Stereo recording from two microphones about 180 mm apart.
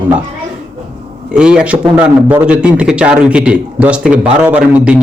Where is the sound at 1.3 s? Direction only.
5° right (ahead or behind).